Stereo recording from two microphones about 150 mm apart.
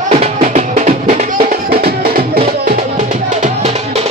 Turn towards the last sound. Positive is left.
turn(degrees=-80)